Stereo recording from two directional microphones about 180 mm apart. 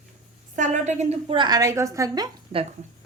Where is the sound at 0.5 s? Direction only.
45° right (ahead or behind); by 2.6 s 25° right (ahead or behind).